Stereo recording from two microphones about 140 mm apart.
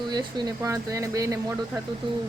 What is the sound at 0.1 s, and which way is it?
Speech, 30° right (ahead or behind).